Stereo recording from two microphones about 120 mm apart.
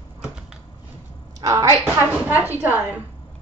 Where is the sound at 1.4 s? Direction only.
30° right (ahead or behind).